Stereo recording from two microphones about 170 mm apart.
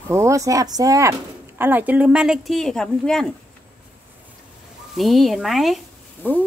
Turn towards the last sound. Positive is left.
turn(degrees=10)  # may be behind; listen again after turning